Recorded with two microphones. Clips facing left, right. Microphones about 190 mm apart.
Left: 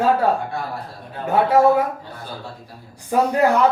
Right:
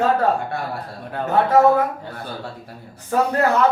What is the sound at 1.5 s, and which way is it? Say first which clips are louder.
Speech: right 1 dB; 10° left (ahead or behind).